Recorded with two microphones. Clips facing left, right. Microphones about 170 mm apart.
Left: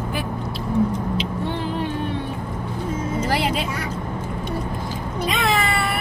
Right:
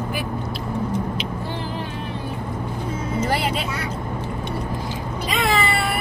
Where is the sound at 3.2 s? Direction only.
Centre (ahead or behind).